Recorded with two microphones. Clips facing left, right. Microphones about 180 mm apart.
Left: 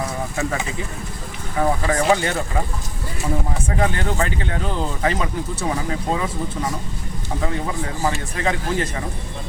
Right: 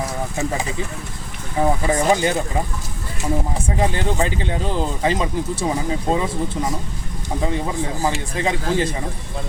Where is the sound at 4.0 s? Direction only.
25° right (ahead or behind).